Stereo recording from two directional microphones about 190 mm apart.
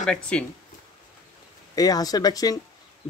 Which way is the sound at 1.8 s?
20° left (ahead or behind).